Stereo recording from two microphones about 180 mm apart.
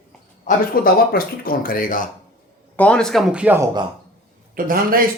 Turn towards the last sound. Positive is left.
turn(degrees=-50)  # may be behind; listen again after turning